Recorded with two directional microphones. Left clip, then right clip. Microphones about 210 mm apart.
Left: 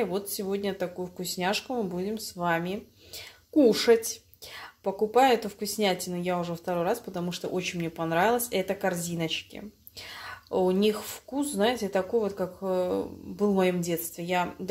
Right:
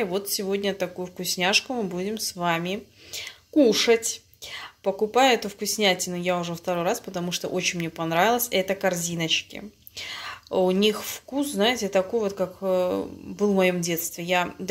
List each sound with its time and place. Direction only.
0.3 s speech: centre (ahead or behind)